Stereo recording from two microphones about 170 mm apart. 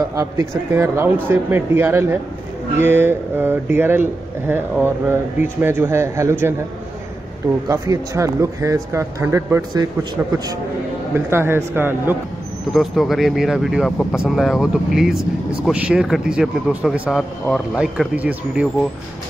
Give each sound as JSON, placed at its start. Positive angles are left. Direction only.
{"t": 0.1, "sound": "a man's voice", "side_deg": -20}
{"t": 7.6, "sound": "a man's voice", "side_deg": -20}
{"t": 11.1, "sound": "a man's voice", "side_deg": -15}
{"t": 12.7, "sound": "speech", "side_deg": 0}